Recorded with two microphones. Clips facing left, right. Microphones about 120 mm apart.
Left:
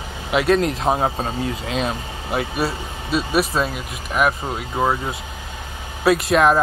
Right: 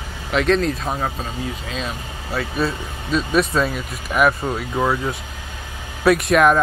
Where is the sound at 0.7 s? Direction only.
30° left (ahead or behind).